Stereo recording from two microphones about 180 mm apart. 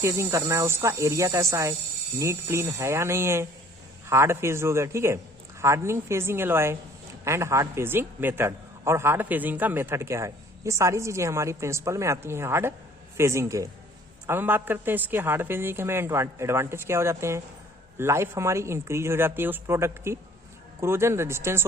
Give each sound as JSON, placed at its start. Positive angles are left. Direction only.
{"t": 0.0, "sound": "a man's voice", "side_deg": -15}